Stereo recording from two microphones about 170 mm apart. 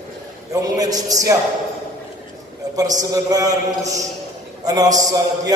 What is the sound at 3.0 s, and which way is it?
Speech, 20° right (ahead or behind).